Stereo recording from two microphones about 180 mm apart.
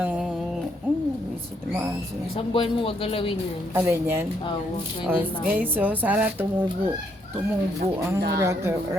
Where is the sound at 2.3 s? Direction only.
30° left (ahead or behind).